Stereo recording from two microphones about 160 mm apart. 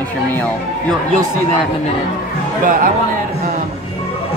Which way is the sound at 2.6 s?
55° right (ahead or behind).